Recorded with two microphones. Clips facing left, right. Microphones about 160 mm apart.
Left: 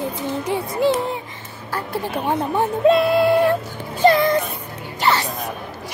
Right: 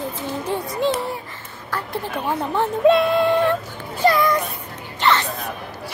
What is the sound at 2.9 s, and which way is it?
Music, 5° left (ahead or behind).